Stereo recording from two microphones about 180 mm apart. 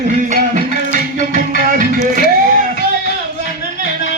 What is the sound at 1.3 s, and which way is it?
Music, 50° right (ahead or behind).